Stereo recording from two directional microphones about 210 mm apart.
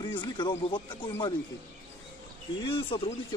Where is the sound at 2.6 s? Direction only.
25° left (ahead or behind).